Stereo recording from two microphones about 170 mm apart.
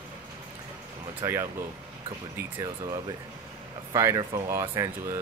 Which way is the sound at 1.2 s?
15° right (ahead or behind).